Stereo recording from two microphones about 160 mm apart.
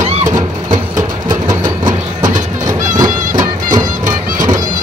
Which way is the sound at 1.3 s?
25° right (ahead or behind).